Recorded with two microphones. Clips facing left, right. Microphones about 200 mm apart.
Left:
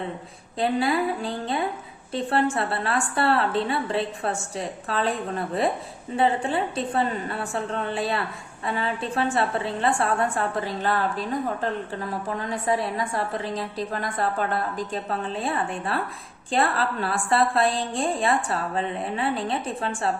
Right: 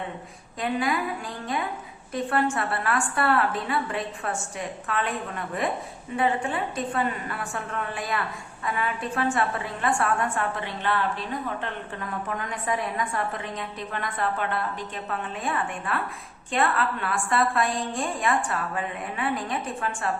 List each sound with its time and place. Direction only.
0.6 s a woman's voice: 30° left (ahead or behind)